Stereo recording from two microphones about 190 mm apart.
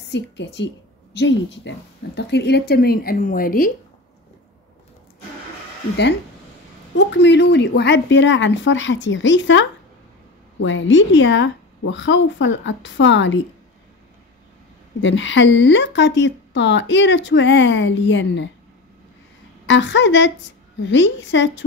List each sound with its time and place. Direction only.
0.1 s a woman's voice: 65° left (ahead or behind); by 3.7 s 45° left (ahead or behind)
7.1 s a woman's voice: 70° left (ahead or behind)
15.0 s a woman's voice: 75° left (ahead or behind)
19.6 s a woman's voice: 70° left (ahead or behind)